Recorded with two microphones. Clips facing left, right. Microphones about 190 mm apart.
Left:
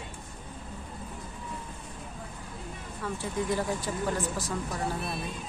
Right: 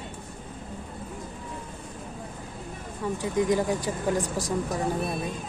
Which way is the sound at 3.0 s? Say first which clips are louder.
Right 6 dB; 15° right (ahead or behind).